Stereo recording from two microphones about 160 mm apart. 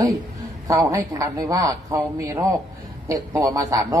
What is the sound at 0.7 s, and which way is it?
A man's voice, 20° right (ahead or behind).